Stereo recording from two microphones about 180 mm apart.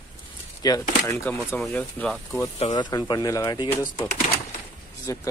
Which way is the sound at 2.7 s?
25° left (ahead or behind).